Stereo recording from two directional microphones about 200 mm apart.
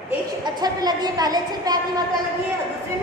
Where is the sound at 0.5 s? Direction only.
20° right (ahead or behind).